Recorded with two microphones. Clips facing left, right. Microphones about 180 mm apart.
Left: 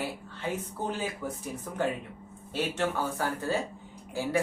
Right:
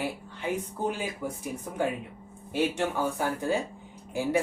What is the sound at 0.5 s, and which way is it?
Speech, 15° right (ahead or behind).